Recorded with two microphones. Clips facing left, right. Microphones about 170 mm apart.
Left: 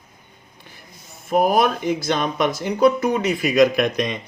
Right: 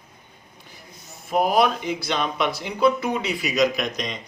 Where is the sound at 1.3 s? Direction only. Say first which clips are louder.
Left 2 dB; 50° left (ahead or behind).